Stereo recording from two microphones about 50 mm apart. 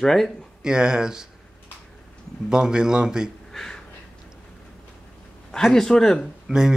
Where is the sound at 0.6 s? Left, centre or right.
Centre.